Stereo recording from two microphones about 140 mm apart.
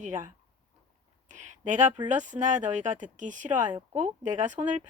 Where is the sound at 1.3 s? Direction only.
60° right (ahead or behind).